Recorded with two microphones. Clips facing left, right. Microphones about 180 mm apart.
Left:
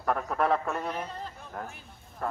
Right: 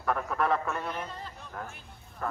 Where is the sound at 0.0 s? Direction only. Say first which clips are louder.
Left 1 dB; 40° left (ahead or behind).